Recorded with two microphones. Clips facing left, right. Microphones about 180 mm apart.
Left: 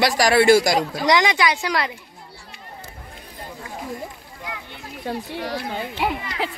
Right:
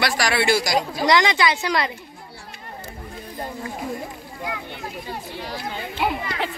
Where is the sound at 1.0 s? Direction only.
15° left (ahead or behind).